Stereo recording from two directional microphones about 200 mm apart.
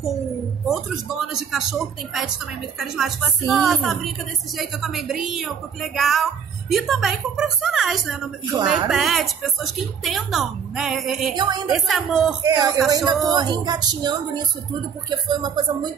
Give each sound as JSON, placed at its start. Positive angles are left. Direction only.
{"t": 0.7, "sound": "a woman's voice", "side_deg": 0}
{"t": 11.3, "sound": "a woman's voice", "side_deg": -20}
{"t": 11.7, "sound": "a woman's voice", "side_deg": 0}
{"t": 12.4, "sound": "a woman's voice", "side_deg": -20}